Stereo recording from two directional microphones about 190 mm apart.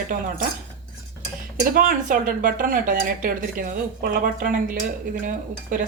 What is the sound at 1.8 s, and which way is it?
A woman's voice, 45° right (ahead or behind).